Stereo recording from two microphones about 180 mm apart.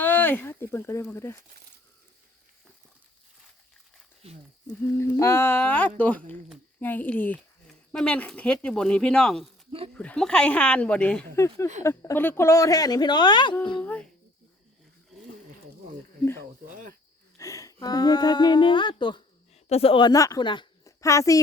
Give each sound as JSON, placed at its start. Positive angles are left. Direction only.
{"t": 0.0, "sound": "speech", "side_deg": 10}
{"t": 4.8, "sound": "speech", "side_deg": 15}
{"t": 11.3, "sound": "a woman's voice", "side_deg": 15}
{"t": 17.3, "sound": "a woman's voice", "side_deg": 20}